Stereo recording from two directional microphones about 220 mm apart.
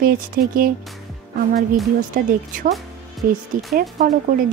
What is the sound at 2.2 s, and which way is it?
Speech, 40° right (ahead or behind).